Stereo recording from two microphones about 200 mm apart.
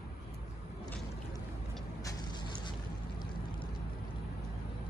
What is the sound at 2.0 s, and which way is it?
Vehicle, 20° left (ahead or behind).